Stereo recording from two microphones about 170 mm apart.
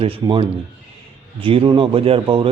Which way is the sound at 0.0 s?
35° right (ahead or behind).